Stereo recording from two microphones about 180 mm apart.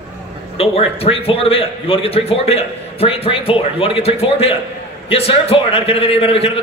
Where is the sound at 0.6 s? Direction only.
35° left (ahead or behind).